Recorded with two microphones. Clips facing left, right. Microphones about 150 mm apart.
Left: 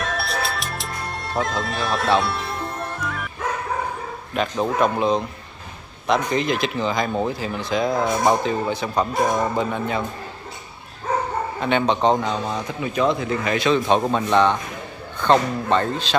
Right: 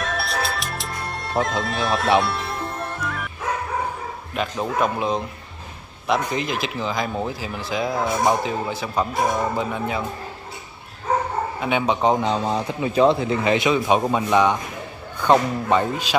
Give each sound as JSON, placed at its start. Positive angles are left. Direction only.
{"t": 0.0, "sound": "music", "side_deg": 0}
{"t": 4.4, "sound": "speech", "side_deg": -5}
{"t": 11.6, "sound": "a man's voice", "side_deg": -5}
{"t": 12.2, "sound": "speech", "side_deg": -30}
{"t": 13.7, "sound": "a man's voice", "side_deg": -10}